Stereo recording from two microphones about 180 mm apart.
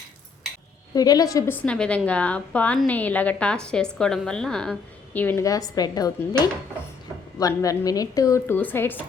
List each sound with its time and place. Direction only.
0.9 s a woman's voice: 20° left (ahead or behind)